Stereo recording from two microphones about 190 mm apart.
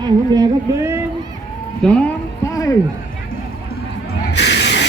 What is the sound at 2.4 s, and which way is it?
Music, 15° left (ahead or behind).